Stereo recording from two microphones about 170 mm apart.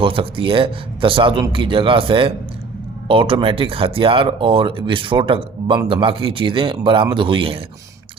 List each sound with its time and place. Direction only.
0.0 s speech: 30° right (ahead or behind)